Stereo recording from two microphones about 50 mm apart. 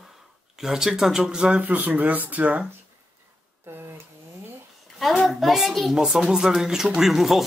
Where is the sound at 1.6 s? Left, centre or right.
Right.